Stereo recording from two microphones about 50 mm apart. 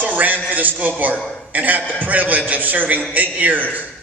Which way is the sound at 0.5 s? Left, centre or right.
Right.